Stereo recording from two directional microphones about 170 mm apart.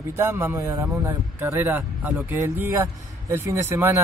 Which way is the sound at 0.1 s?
15° right (ahead or behind).